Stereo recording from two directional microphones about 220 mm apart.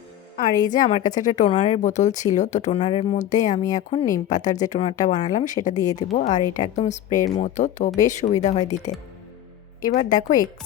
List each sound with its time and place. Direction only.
0.6 s speech: 35° left (ahead or behind)
9.9 s speech: 35° left (ahead or behind)